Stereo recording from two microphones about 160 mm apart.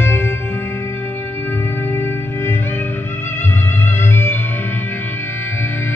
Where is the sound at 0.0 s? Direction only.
15° left (ahead or behind).